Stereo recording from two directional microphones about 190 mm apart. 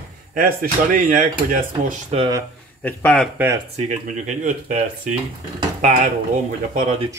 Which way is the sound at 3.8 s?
40° right (ahead or behind).